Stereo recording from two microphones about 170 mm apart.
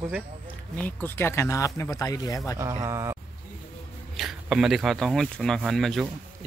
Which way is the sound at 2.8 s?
15° right (ahead or behind).